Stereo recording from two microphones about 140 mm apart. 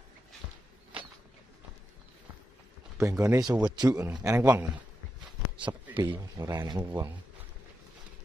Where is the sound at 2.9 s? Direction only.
25° right (ahead or behind).